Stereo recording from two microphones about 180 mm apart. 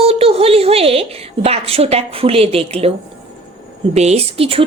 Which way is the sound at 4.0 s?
35° right (ahead or behind).